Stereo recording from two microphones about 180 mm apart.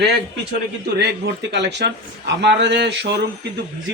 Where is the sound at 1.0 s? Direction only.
70° right (ahead or behind).